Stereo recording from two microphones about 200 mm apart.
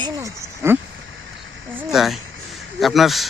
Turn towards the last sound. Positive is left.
turn(degrees=0)  # may be behind; listen again after turning